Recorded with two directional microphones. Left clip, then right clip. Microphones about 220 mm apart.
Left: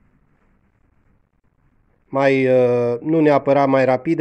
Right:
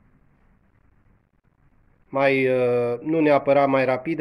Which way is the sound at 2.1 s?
55° left (ahead or behind).